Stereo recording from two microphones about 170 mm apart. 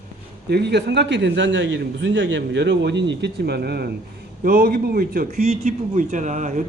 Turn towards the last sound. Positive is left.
turn(degrees=-45)  # may be behind; listen again after turning